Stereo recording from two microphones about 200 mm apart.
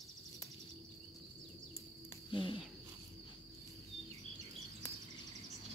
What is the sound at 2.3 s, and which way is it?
Speech, 25° left (ahead or behind).